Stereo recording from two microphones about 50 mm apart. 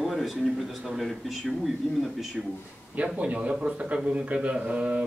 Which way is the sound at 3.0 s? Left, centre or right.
Right.